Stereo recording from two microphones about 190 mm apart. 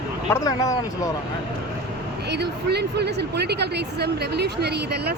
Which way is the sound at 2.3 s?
60° right (ahead or behind).